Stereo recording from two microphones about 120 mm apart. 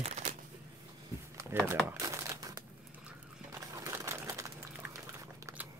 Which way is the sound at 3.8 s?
20° right (ahead or behind).